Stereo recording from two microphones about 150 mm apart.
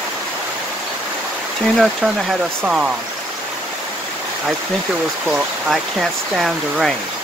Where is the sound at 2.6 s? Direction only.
5° right (ahead or behind).